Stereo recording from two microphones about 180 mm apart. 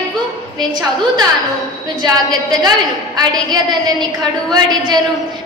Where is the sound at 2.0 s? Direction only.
20° right (ahead or behind).